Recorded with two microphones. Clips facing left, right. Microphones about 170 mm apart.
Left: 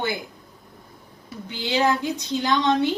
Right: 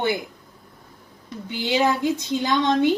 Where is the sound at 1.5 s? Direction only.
15° right (ahead or behind).